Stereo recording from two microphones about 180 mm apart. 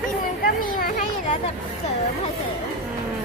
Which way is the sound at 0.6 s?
50° left (ahead or behind).